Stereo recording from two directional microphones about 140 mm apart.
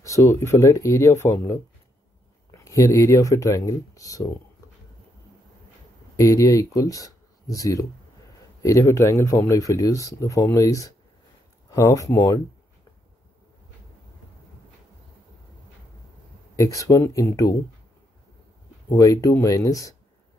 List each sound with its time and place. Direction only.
0.0 s speech: 20° left (ahead or behind)
6.1 s speech: 25° left (ahead or behind)
16.5 s speech: 20° left (ahead or behind)
18.9 s speech: 25° left (ahead or behind)